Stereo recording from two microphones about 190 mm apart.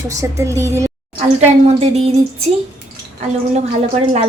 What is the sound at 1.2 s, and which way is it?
Speech, 35° right (ahead or behind).